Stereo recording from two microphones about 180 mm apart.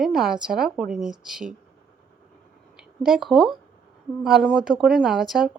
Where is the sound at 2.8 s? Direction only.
Centre (ahead or behind).